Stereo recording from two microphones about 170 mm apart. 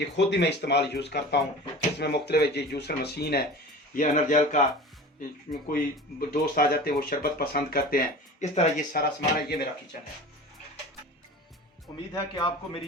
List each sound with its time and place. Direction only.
0.2 s speech: 90° left; by 3.4 s 70° left (ahead or behind)
3.9 s a man's voice: 50° left (ahead or behind)
5.5 s speech: 55° left (ahead or behind)
8.4 s speech: 45° left (ahead or behind); by 9.6 s 65° left (ahead or behind)
12.3 s a man's voice: 30° left (ahead or behind)